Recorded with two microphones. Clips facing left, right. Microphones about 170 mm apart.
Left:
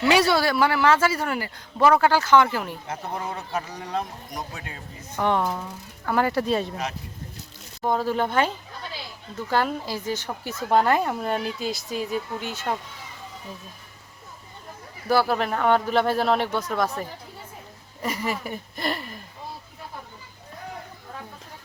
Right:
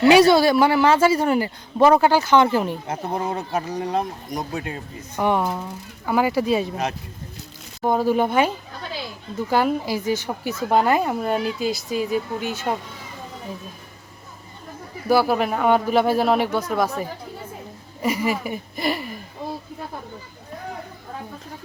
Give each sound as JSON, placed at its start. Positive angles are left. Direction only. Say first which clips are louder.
{"t": 0.1, "sound": "speech", "louder": "right 6 dB", "side_deg": -15}
{"t": 2.9, "sound": "speech", "louder": "right 4 dB", "side_deg": -35}
{"t": 5.1, "sound": "speech", "louder": "right 2 dB", "side_deg": -10}
{"t": 7.9, "sound": "speech", "louder": "right 5 dB", "side_deg": -10}
{"t": 15.1, "sound": "speech", "louder": "right 3 dB", "side_deg": -10}